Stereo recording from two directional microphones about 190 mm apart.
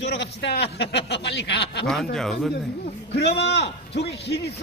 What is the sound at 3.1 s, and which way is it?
A man's voice, 60° left (ahead or behind).